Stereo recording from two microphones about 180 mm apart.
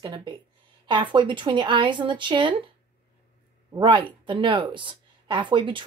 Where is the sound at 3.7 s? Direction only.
25° right (ahead or behind).